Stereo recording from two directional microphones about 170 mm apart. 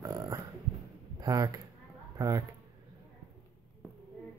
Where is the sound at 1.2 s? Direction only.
20° right (ahead or behind).